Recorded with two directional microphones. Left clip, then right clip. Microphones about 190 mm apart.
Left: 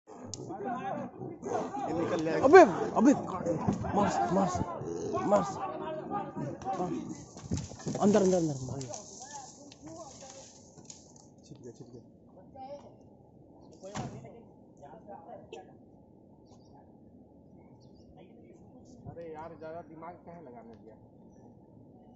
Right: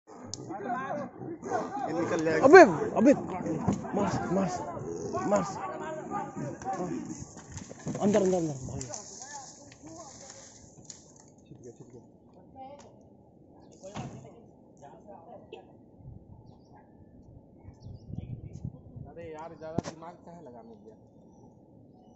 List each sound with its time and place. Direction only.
0.1 s speech: 10° right (ahead or behind)
2.7 s speech: centre (ahead or behind)
7.3 s speech: 15° left (ahead or behind)
8.7 s speech: 5° right (ahead or behind)
15.0 s a sound: 50° left (ahead or behind)
19.1 s a sound: 55° right (ahead or behind)